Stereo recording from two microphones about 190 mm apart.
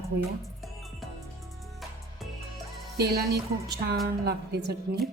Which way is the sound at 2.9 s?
60° right (ahead or behind).